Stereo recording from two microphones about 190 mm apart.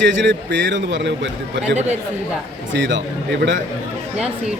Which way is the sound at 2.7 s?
70° right (ahead or behind).